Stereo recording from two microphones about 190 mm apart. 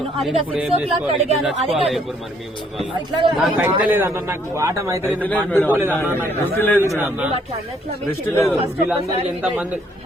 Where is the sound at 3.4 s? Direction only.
10° right (ahead or behind).